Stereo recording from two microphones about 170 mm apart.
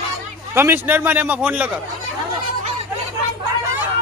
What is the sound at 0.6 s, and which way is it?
A man's voice, 15° right (ahead or behind).